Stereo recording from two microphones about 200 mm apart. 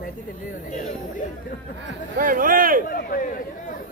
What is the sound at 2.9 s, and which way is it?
Chatter, 45° left (ahead or behind).